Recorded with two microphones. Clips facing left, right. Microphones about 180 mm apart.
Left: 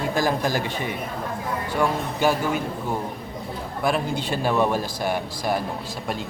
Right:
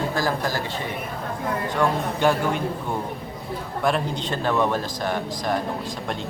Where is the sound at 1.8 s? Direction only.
5° left (ahead or behind).